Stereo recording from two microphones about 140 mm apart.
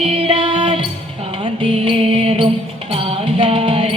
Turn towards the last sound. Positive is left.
turn(degrees=-40)  # may be behind; listen again after turning